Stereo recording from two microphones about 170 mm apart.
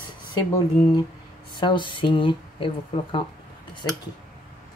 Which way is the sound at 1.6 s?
30° left (ahead or behind).